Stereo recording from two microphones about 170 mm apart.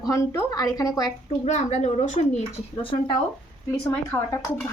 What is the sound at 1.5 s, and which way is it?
Speech, 45° left (ahead or behind).